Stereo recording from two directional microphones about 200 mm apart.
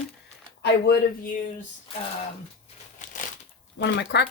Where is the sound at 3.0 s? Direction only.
40° left (ahead or behind).